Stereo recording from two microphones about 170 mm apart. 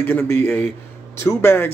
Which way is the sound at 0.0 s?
10° left (ahead or behind).